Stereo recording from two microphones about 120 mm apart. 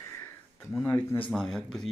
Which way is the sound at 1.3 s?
5° left (ahead or behind).